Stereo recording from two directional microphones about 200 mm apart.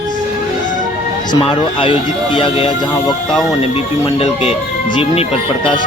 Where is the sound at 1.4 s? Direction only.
25° left (ahead or behind).